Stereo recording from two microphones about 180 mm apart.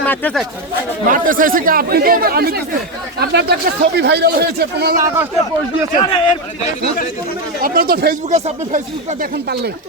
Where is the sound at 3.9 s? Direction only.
65° right (ahead or behind).